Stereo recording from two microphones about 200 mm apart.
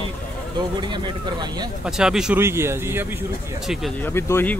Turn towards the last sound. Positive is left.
turn(degrees=10)  # may be behind; listen again after turning